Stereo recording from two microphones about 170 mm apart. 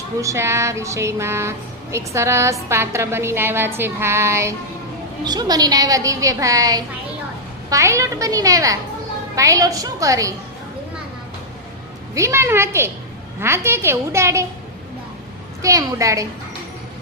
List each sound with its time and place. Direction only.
0.2 s a woman's voice: 15° right (ahead or behind)
12.1 s speech: 15° right (ahead or behind)
15.6 s a woman's voice: 20° right (ahead or behind)